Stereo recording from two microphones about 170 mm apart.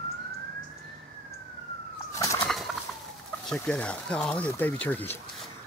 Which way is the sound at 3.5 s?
5° left (ahead or behind).